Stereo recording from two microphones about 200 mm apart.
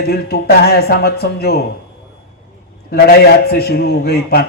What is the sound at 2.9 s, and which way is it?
Speech, 50° left (ahead or behind).